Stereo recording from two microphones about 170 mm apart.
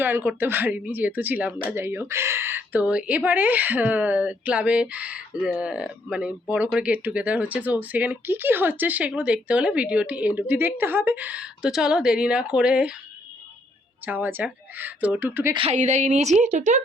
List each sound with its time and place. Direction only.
0.0 s speech: 10° right (ahead or behind)
14.0 s speech: 10° right (ahead or behind)
15.5 s a woman's voice: 40° right (ahead or behind)